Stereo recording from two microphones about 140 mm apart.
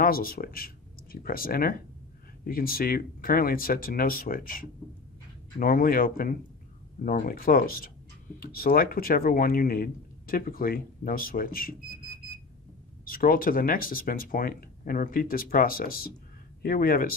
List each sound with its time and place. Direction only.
0.0 s speech: 90° left
13.0 s speech: 90° left